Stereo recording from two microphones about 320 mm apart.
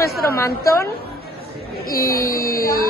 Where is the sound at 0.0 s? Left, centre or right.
Centre.